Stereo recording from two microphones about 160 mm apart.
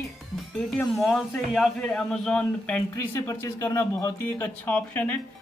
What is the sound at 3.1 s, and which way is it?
Speech, 15° left (ahead or behind).